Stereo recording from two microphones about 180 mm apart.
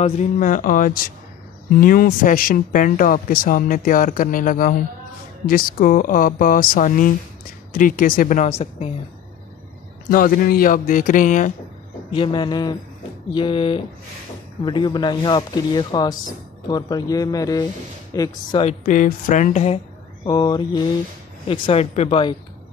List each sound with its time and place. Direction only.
0.0 s speech: 45° left (ahead or behind)
8.5 s speech: 35° left (ahead or behind)
10.0 s speech: 55° left (ahead or behind)
12.1 s speech: 30° left (ahead or behind)
18.6 s speech: 40° left (ahead or behind)
20.2 s speech: 25° left (ahead or behind)